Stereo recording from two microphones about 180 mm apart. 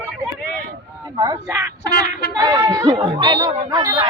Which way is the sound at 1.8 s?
65° left (ahead or behind).